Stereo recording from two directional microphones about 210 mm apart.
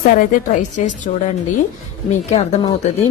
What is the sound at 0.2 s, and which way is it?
Speech, 40° left (ahead or behind).